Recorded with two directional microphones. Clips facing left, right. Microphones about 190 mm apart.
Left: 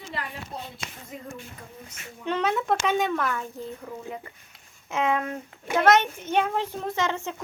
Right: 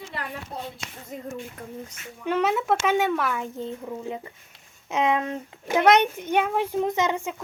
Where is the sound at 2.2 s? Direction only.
5° right (ahead or behind).